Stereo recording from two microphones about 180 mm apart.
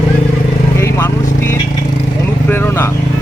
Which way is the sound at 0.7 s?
15° left (ahead or behind).